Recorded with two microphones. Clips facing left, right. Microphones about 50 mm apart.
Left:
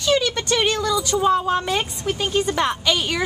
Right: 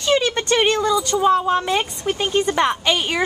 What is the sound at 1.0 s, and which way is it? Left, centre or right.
Speech, centre.